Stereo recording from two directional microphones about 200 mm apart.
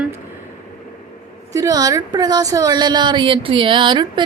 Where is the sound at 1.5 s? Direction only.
15° right (ahead or behind).